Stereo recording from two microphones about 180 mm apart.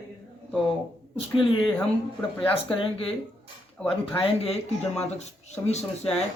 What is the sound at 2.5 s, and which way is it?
Speech, 30° left (ahead or behind).